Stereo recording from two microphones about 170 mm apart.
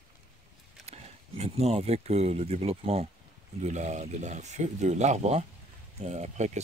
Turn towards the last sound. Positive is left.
turn(degrees=-45)  # may be behind; listen again after turning